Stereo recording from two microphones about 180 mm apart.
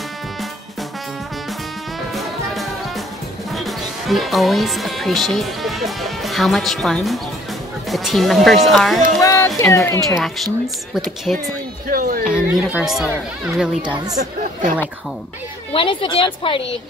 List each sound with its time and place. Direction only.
2.1 s music: centre (ahead or behind)
3.5 s speech: centre (ahead or behind)
9.2 s speech: 15° left (ahead or behind)
10.0 s speech: centre (ahead or behind)
11.9 s a sound: 50° right (ahead or behind)
12.3 s speech: 5° right (ahead or behind)
14.1 s speech: 45° right (ahead or behind)
15.7 s a woman's voice: 30° left (ahead or behind)